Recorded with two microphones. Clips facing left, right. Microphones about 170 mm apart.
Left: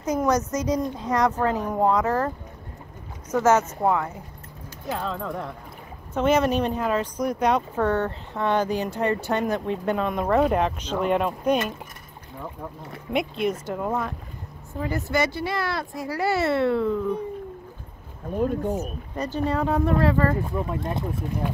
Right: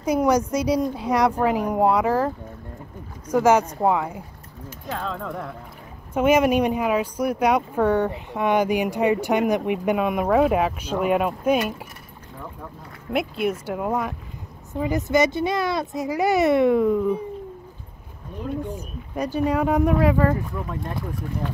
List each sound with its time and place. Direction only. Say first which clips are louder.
0.0 s speech: right 3 dB; 10° right (ahead or behind)
4.8 s speech: left 1 dB; 5° left (ahead or behind)
6.1 s speech: right 3 dB; 10° right (ahead or behind)
13.1 s speech: right 1 dB; 5° right (ahead or behind)
19.1 s speech: right 3 dB; 10° right (ahead or behind)
20.4 s speech: left 3 dB; 25° left (ahead or behind)